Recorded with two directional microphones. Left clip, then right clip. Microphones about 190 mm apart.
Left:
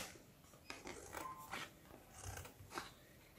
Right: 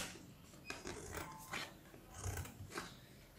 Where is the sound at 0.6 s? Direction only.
10° left (ahead or behind).